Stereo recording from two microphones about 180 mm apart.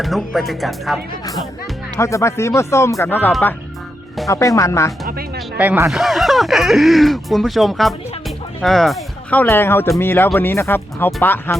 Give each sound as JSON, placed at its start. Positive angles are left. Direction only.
{"t": 0.0, "sound": "speech", "side_deg": 0}
{"t": 2.0, "sound": "speech", "side_deg": 15}
{"t": 5.5, "sound": "speech", "side_deg": -10}